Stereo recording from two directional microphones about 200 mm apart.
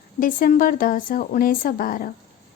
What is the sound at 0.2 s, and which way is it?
Speech, 45° left (ahead or behind).